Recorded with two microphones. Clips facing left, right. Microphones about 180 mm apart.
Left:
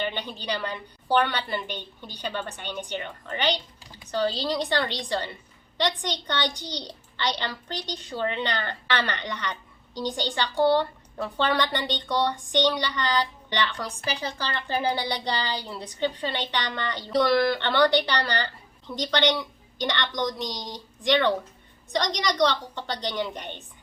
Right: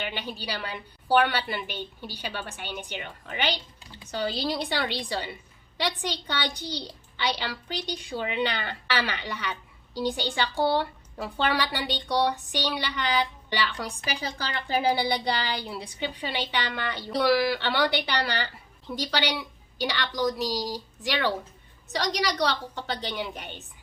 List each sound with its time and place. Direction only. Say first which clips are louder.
0.0 s a woman's voice: left 3 dB; 10° right (ahead or behind)